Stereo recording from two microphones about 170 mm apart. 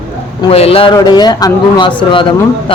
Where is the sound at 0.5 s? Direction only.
35° left (ahead or behind).